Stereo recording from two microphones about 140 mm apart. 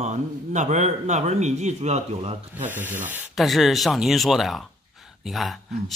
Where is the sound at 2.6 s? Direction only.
15° right (ahead or behind).